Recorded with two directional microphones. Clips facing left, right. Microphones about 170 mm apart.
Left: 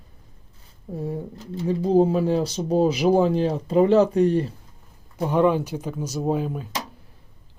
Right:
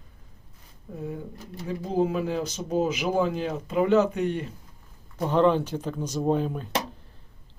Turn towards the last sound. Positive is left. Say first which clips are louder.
# even
turn(degrees=5)  # may be behind; listen again after turning